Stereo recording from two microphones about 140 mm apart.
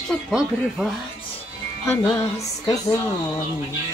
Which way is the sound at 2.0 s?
30° left (ahead or behind).